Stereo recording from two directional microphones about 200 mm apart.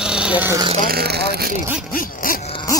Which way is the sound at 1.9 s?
45° left (ahead or behind).